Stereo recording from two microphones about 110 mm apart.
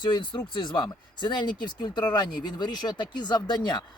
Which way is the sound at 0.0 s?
45° left (ahead or behind).